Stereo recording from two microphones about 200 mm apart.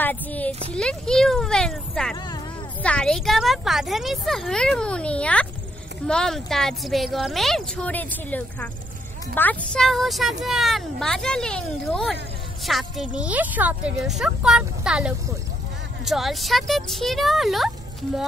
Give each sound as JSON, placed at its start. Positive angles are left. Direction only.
{"t": 0.0, "sound": "a sound", "side_deg": 10}
{"t": 0.5, "sound": "speech", "side_deg": -30}
{"t": 0.7, "sound": "speech", "side_deg": 5}